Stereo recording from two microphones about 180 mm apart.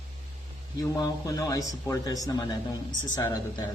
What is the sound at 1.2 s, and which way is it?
Speech, 20° left (ahead or behind).